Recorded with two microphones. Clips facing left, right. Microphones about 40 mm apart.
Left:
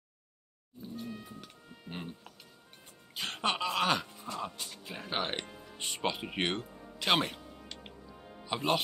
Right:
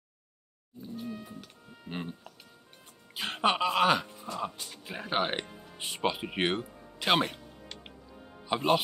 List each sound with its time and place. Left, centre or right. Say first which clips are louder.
0.9 s music: right 3 dB; centre
1.9 s speech: right 4 dB; centre
3.2 s speech: right 5 dB; centre
7.6 s music: even; centre
8.5 s speech: right 4 dB; centre